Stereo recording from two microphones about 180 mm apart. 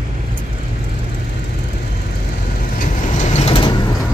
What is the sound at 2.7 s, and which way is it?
Vehicle, 40° left (ahead or behind).